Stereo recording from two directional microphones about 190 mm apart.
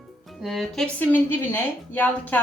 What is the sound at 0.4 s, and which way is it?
Speech, centre (ahead or behind).